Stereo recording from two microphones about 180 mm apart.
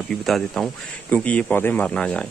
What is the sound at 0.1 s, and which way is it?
Speech, centre (ahead or behind).